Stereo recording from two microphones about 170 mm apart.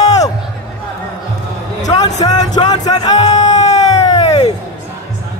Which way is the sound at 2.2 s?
20° left (ahead or behind).